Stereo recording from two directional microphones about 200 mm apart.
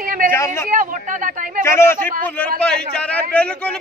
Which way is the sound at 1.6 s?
10° left (ahead or behind).